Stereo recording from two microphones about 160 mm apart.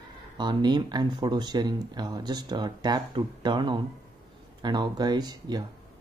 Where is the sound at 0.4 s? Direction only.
30° right (ahead or behind).